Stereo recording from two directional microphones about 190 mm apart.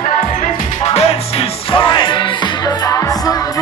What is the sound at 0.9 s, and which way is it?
Music, 30° left (ahead or behind).